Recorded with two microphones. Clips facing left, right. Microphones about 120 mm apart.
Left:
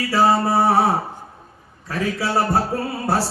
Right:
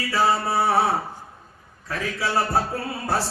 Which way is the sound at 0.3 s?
40° left (ahead or behind).